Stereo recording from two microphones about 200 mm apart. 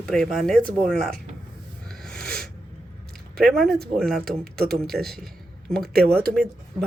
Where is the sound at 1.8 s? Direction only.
5° left (ahead or behind).